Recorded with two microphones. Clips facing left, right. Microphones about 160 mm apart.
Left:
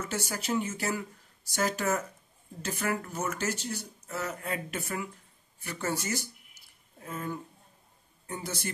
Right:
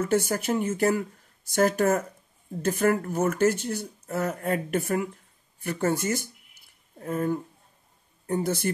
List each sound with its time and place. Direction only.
0.0 s speech: 55° right (ahead or behind)
7.0 s a sound: 45° right (ahead or behind)
8.3 s speech: 50° right (ahead or behind)